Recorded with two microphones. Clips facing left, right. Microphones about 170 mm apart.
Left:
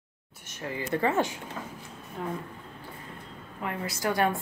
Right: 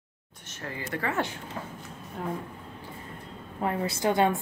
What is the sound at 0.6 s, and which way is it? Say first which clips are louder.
Speech: left 5 dB; 20° left (ahead or behind).